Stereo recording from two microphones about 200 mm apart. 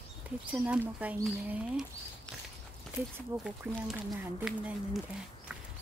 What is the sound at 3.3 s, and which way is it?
Speech, 15° right (ahead or behind).